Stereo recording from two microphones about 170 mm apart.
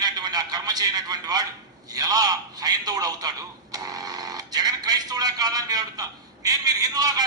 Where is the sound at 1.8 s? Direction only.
20° right (ahead or behind).